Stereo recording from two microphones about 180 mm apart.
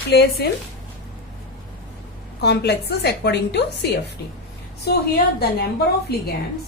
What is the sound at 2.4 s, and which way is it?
A woman's voice, 70° left (ahead or behind).